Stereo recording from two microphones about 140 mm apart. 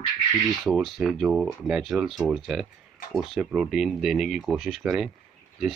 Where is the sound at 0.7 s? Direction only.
5° right (ahead or behind).